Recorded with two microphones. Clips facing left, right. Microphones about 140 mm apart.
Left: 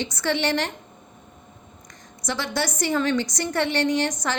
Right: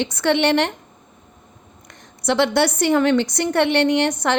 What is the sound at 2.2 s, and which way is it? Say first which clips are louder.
A woman's voice: right 9 dB; 65° right (ahead or behind).